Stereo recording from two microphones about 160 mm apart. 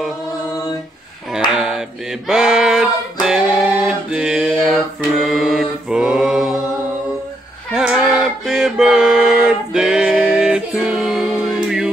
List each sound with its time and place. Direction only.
1.5 s mantra: 5° right (ahead or behind)
2.2 s singing: 5° right (ahead or behind)
4.1 s mantra: 5° right (ahead or behind)
7.7 s music: 5° right (ahead or behind)